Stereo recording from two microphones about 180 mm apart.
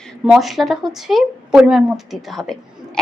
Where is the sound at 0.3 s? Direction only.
Centre (ahead or behind).